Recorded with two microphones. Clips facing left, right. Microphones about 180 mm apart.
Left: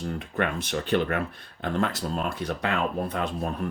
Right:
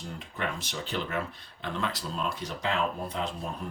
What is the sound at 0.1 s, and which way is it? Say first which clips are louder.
Speech: left 6 dB; 55° left (ahead or behind).